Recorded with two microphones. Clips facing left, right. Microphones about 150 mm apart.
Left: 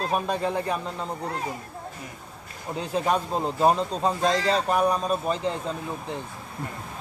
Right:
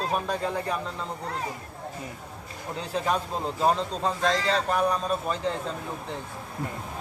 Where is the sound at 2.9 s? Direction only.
15° left (ahead or behind).